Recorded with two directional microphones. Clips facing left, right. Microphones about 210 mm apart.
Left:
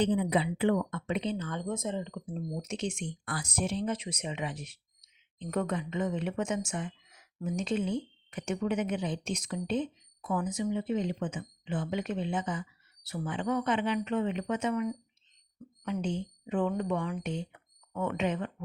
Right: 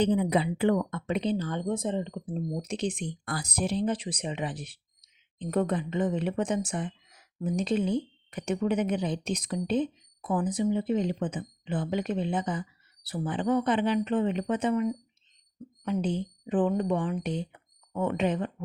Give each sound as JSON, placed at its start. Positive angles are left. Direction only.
{"t": 0.0, "sound": "speech", "side_deg": -40}